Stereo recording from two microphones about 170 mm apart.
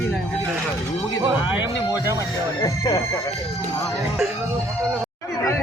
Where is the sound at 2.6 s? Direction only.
25° left (ahead or behind).